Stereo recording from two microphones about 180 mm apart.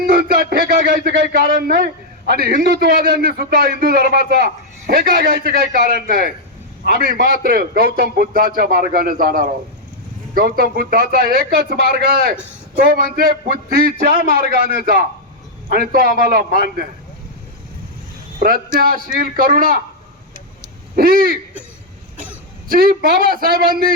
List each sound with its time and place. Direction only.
0.0 s a man's voice: 55° right (ahead or behind)
18.3 s a man's voice: 55° right (ahead or behind)
20.9 s a man's voice: 55° right (ahead or behind)
22.7 s a man's voice: 55° right (ahead or behind)